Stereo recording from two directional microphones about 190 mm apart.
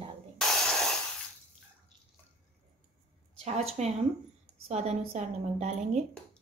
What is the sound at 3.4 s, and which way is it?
A woman's voice, 35° right (ahead or behind).